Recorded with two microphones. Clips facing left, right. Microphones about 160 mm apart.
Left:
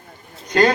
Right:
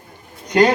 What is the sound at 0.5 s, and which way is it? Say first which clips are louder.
Speech: right 2 dB; 15° right (ahead or behind).